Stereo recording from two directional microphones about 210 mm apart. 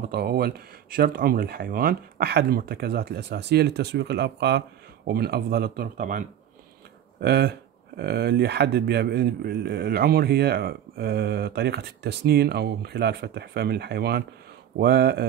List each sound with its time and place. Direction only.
0.1 s a man's voice: 45° right (ahead or behind)
7.2 s a man's voice: 50° right (ahead or behind)